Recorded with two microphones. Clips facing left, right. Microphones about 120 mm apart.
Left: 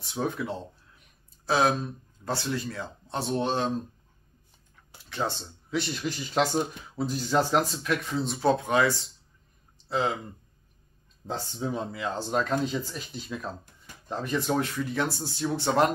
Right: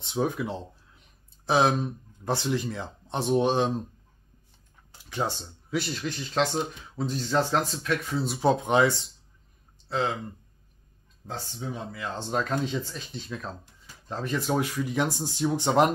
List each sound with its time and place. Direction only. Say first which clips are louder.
0.0 s speech: right 3 dB; 15° right (ahead or behind)
5.1 s speech: right 1 dB; 10° right (ahead or behind)
8.4 s speech: right 2 dB; 20° right (ahead or behind)
9.8 s speech: left 1 dB; 10° left (ahead or behind)
11.2 s speech: left 4 dB; 35° left (ahead or behind)
12.2 s speech: left 1 dB; centre (ahead or behind); by 15.9 s 15° right (ahead or behind)